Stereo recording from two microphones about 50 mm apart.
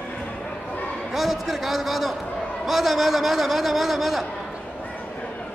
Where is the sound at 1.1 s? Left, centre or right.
Centre.